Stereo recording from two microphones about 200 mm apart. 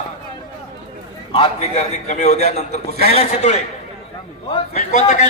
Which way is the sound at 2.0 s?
35° left (ahead or behind).